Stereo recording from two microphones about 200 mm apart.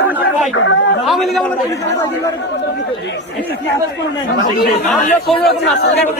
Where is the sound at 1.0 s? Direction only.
Centre (ahead or behind).